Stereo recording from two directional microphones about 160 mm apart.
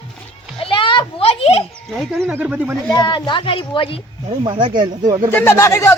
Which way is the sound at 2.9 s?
30° left (ahead or behind).